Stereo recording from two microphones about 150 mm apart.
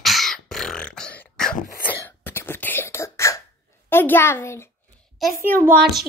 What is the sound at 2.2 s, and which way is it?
Beatboxing, 15° left (ahead or behind).